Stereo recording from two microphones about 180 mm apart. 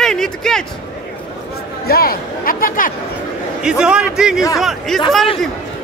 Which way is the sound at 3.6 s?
5° right (ahead or behind).